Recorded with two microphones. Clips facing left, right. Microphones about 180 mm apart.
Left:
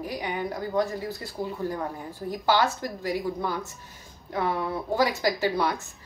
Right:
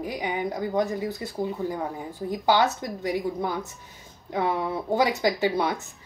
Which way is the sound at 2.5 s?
20° right (ahead or behind).